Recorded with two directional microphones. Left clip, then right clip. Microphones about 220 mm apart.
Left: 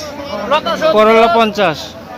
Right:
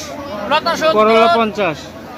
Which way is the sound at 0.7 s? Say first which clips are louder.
Left 1 dB; 45° right (ahead or behind).